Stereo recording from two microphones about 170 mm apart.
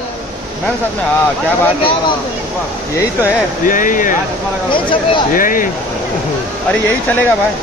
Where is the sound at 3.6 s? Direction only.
50° left (ahead or behind).